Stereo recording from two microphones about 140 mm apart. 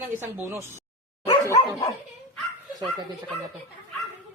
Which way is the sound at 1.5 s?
25° left (ahead or behind).